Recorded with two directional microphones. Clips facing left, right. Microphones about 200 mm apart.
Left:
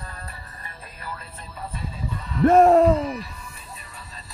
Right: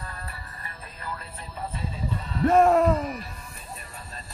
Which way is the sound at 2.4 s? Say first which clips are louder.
Left 4 dB; 40° left (ahead or behind).